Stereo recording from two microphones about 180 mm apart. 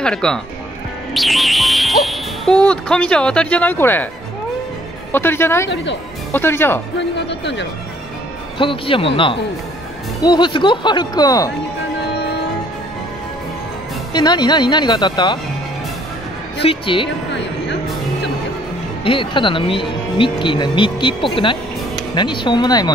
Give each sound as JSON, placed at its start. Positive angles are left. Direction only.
{"t": 0.0, "sound": "speech", "side_deg": 5}
{"t": 5.1, "sound": "a woman's voice", "side_deg": 10}
{"t": 7.0, "sound": "speech", "side_deg": 75}
{"t": 8.5, "sound": "speech", "side_deg": 30}
{"t": 14.1, "sound": "speech", "side_deg": 25}
{"t": 16.6, "sound": "speech", "side_deg": 30}
{"t": 19.0, "sound": "speech", "side_deg": 30}